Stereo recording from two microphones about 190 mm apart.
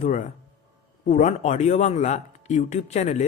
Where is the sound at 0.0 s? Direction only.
40° left (ahead or behind).